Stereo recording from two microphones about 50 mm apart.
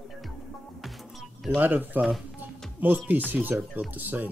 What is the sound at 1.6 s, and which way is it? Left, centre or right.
Speech, right.